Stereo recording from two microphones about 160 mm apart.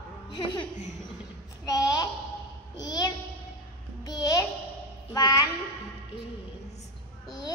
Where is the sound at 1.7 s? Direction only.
25° left (ahead or behind).